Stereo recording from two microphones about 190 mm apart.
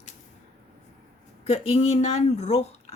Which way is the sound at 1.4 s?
30° left (ahead or behind).